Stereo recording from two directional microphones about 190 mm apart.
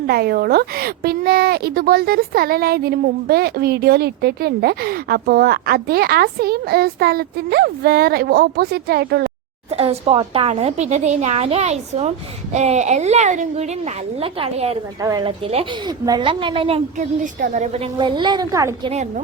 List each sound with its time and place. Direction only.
0.1 s speech: 55° right (ahead or behind)
9.7 s a woman's voice: 30° right (ahead or behind)
15.0 s a woman's voice: 20° right (ahead or behind); by 17.7 s 40° right (ahead or behind)
17.9 s a woman's voice: 25° right (ahead or behind)